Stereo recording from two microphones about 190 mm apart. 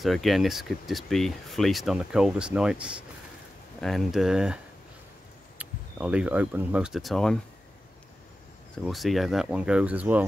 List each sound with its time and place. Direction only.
0.0 s speech: centre (ahead or behind)
5.6 s speech: 5° right (ahead or behind)
8.7 s speech: centre (ahead or behind)